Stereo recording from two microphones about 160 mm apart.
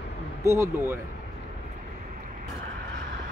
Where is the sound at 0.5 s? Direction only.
15° right (ahead or behind).